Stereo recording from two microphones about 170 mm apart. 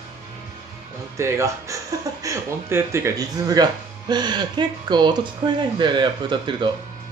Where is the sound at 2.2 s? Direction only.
15° right (ahead or behind).